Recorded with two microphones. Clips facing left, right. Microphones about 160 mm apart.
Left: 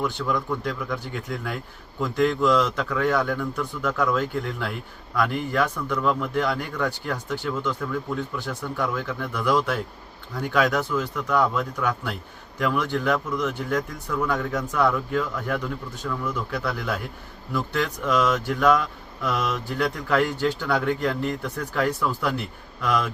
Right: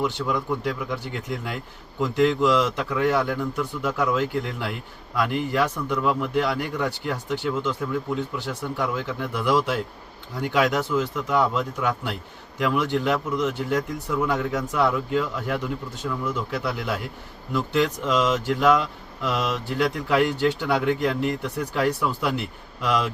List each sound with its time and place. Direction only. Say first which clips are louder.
0.0 s a man's voice: right 1 dB; 15° right (ahead or behind)